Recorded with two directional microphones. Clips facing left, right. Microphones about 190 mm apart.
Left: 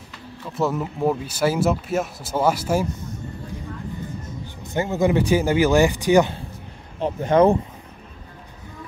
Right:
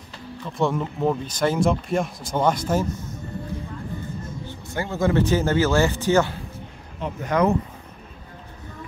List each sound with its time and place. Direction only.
0.4 s speech: 5° left (ahead or behind)
4.7 s speech: 20° left (ahead or behind)
7.0 s speech: 30° left (ahead or behind)